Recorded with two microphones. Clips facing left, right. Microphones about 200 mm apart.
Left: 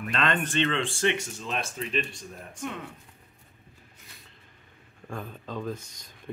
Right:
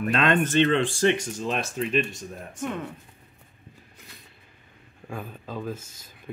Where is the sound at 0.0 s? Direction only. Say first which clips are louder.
Right 6 dB; 45° right (ahead or behind).